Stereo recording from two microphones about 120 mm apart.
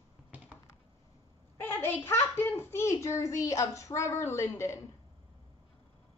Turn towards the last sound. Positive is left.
turn(degrees=20)  # may be behind; listen again after turning